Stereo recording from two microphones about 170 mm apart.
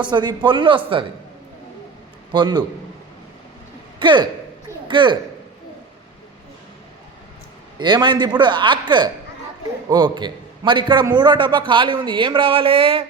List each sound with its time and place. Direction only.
0.0 s a man's voice: 25° right (ahead or behind)
2.3 s a man's voice: 25° right (ahead or behind)
4.0 s a man's voice: 25° right (ahead or behind)
7.8 s a man's voice: 25° right (ahead or behind)